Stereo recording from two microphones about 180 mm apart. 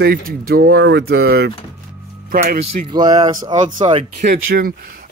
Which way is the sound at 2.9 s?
20° right (ahead or behind).